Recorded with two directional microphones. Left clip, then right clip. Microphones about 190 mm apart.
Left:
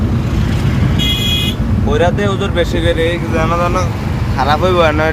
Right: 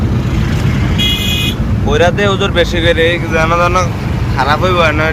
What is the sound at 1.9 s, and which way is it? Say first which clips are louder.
Speech: right 3 dB; 20° left (ahead or behind).